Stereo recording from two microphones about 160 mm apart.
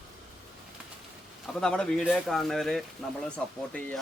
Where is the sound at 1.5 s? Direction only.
5° left (ahead or behind).